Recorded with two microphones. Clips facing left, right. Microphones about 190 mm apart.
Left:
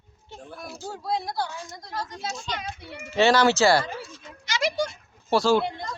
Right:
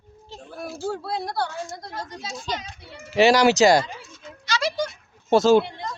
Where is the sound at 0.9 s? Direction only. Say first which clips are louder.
Left 1 dB; 65° right (ahead or behind).